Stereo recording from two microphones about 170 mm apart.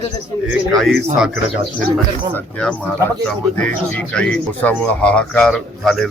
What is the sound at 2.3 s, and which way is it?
Speech, 5° left (ahead or behind).